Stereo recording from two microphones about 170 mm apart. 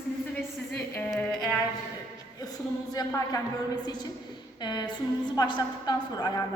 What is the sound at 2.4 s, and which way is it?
A woman's voice, 20° left (ahead or behind).